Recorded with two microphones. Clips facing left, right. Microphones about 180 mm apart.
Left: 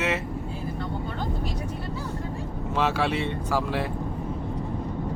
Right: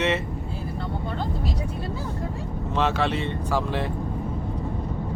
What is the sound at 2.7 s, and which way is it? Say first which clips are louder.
Speech: right 1 dB; 10° left (ahead or behind).